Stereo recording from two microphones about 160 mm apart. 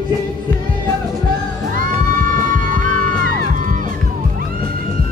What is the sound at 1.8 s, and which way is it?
Music, 55° right (ahead or behind).